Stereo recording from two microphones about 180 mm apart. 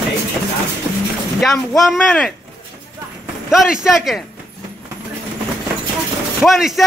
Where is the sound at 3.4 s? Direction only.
Centre (ahead or behind).